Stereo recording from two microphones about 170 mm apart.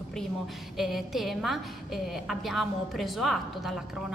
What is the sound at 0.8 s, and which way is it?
A woman's voice, centre (ahead or behind).